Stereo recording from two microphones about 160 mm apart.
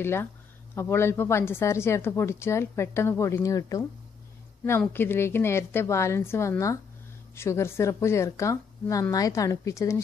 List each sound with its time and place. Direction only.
0.0 s speech: 15° left (ahead or behind)